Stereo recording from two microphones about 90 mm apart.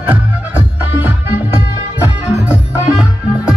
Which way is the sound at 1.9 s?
15° right (ahead or behind).